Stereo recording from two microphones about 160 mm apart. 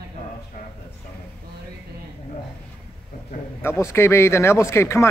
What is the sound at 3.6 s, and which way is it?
Speech, 15° left (ahead or behind).